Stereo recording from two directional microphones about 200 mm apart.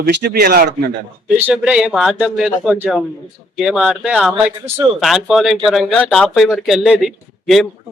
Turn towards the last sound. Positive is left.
turn(degrees=0)  # may be behind; listen again after turning